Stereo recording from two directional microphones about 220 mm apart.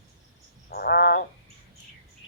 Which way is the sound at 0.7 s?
45° left (ahead or behind).